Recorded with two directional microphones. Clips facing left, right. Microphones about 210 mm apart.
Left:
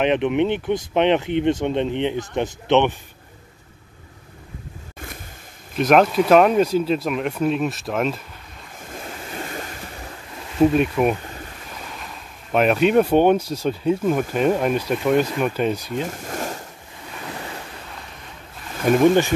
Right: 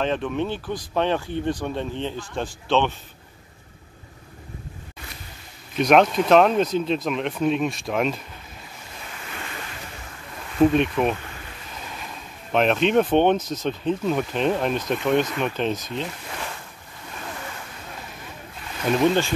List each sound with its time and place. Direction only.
0.0 s speech: 20° left (ahead or behind)
4.9 s vehicle: 50° left (ahead or behind)
5.8 s speech: centre (ahead or behind)
9.3 s waves: 40° left (ahead or behind)
10.6 s speech: 5° left (ahead or behind)
12.5 s speech: 5° left (ahead or behind)
15.9 s speech: 45° left (ahead or behind)
18.9 s speech: 50° left (ahead or behind)